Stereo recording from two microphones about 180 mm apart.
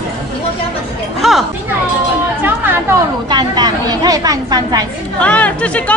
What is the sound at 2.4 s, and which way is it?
Chatter, 10° right (ahead or behind).